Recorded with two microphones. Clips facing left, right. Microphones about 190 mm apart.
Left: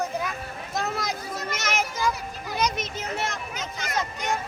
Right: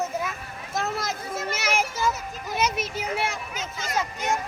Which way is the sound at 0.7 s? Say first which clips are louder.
Right 1 dB; centre (ahead or behind).